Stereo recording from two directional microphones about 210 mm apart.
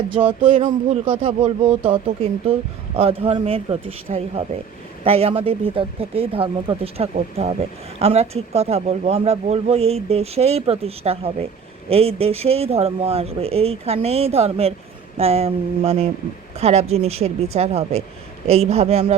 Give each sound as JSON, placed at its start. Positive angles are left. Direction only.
{"t": 0.4, "sound": "speech", "side_deg": -35}
{"t": 1.2, "sound": "speech", "side_deg": -25}